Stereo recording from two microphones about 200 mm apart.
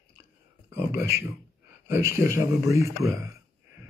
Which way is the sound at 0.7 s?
15° right (ahead or behind).